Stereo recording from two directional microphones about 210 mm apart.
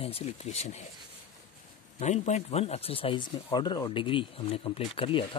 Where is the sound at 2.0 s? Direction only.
35° left (ahead or behind).